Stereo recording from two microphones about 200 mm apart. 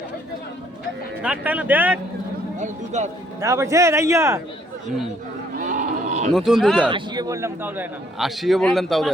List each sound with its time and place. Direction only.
1.2 s speech: 5° right (ahead or behind)
2.6 s speech: 35° right (ahead or behind)
3.4 s speech: 15° right (ahead or behind)
5.5 s livestock: 40° right (ahead or behind)
6.3 s a man's voice: centre (ahead or behind)
6.9 s a man's voice: 20° right (ahead or behind); by 9.0 s centre (ahead or behind)